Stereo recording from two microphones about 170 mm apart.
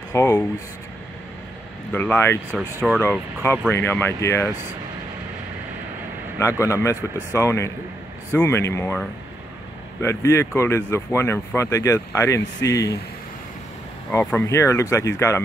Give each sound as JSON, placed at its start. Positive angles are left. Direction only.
{"t": 0.1, "sound": "speech", "side_deg": 15}
{"t": 1.9, "sound": "speech", "side_deg": 10}
{"t": 2.5, "sound": "speech", "side_deg": 5}
{"t": 6.4, "sound": "speech", "side_deg": 15}
{"t": 10.0, "sound": "speech", "side_deg": 15}
{"t": 14.4, "sound": "speech", "side_deg": 15}